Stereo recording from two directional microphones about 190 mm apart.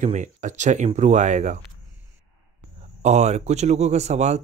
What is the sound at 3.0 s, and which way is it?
Speech, 35° right (ahead or behind).